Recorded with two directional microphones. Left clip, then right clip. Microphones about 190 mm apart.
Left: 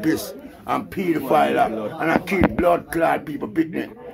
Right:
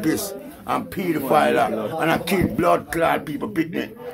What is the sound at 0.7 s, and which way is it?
Speech, 35° left (ahead or behind).